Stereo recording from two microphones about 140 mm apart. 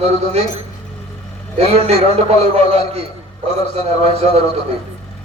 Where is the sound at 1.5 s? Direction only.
45° right (ahead or behind).